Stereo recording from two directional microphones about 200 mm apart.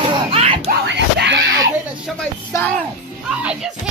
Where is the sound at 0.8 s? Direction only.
60° right (ahead or behind).